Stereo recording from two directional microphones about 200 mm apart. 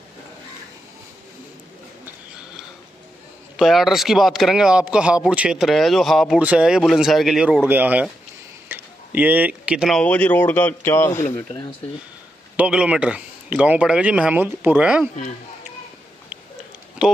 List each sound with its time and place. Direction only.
3.5 s speech: centre (ahead or behind); by 11.7 s 20° left (ahead or behind)
12.5 s speech: 5° right (ahead or behind)